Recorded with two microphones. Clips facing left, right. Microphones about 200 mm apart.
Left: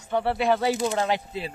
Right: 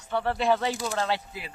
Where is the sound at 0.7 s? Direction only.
20° left (ahead or behind).